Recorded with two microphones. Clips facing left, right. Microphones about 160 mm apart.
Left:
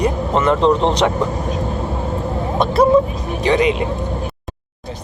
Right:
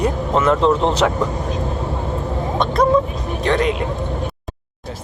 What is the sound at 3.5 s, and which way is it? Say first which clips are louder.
Speech: left 3 dB; 5° left (ahead or behind).